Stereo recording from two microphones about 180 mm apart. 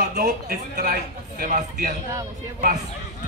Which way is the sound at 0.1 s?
60° right (ahead or behind).